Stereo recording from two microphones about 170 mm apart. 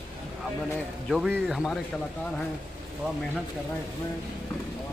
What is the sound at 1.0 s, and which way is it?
Speech, centre (ahead or behind).